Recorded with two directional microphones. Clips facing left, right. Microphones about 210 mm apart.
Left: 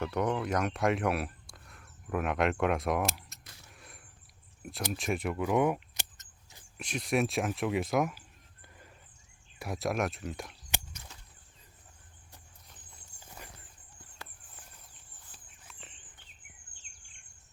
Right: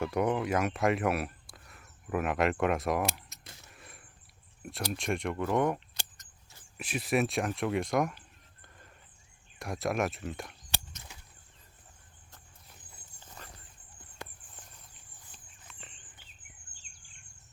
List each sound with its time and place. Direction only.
0.0 s speech: 10° right (ahead or behind)
3.4 s a sound: 25° right (ahead or behind)
3.7 s a sound: centre (ahead or behind)
4.6 s speech: centre (ahead or behind)
5.9 s vehicle: 20° left (ahead or behind)
6.7 s speech: 5° right (ahead or behind)
9.6 s speech: centre (ahead or behind)
13.1 s dog: 10° left (ahead or behind)
15.6 s bird: centre (ahead or behind)